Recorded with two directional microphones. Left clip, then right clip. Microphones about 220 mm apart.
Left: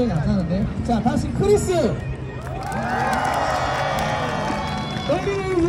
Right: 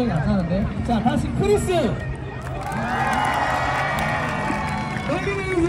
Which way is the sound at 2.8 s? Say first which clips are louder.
Even; 40° right (ahead or behind).